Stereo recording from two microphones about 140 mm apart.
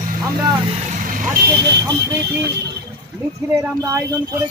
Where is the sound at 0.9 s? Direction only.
80° right.